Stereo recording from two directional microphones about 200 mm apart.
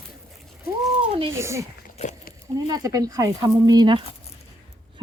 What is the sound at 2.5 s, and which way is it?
Speech, 20° right (ahead or behind).